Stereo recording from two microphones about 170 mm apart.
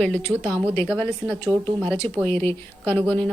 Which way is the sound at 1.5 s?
30° right (ahead or behind).